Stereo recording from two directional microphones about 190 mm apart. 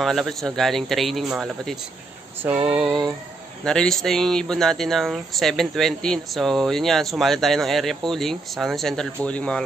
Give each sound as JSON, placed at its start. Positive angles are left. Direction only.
{"t": 0.0, "sound": "speech", "side_deg": 0}
{"t": 2.4, "sound": "a sound", "side_deg": -10}
{"t": 3.6, "sound": "speech", "side_deg": 5}